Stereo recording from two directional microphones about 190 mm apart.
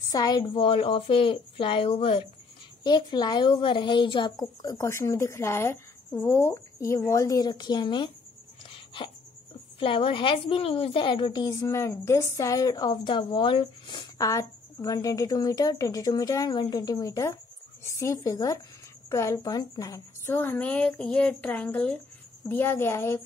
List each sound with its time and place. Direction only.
0.1 s a woman's voice: 20° left (ahead or behind)
8.6 s dog: 25° left (ahead or behind)
9.8 s a woman's voice: 25° left (ahead or behind)